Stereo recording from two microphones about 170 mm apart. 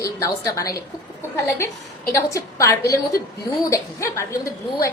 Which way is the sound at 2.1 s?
20° left (ahead or behind).